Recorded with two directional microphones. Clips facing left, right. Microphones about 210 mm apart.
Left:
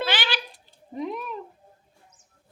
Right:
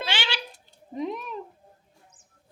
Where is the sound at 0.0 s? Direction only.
25° right (ahead or behind).